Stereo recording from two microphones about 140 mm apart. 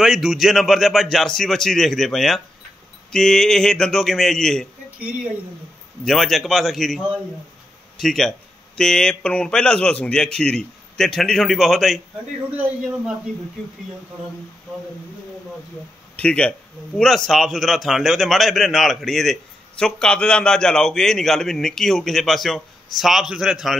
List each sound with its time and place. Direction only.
0.0 s speech: 5° right (ahead or behind)
6.0 s speech: centre (ahead or behind)
8.0 s speech: centre (ahead or behind)
16.2 s speech: 10° left (ahead or behind)